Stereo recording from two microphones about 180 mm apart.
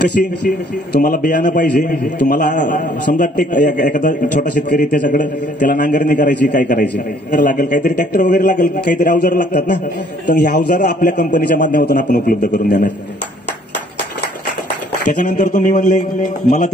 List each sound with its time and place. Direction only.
0.9 s a man's voice: 50° left (ahead or behind)
9.5 s a man's voice: 60° left (ahead or behind)
15.3 s a man's voice: 50° left (ahead or behind)